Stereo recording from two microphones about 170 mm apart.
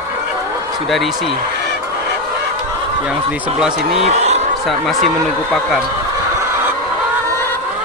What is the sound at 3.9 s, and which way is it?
Speech, 40° right (ahead or behind).